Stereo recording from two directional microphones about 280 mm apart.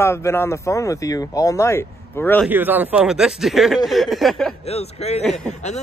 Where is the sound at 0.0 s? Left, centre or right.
Centre.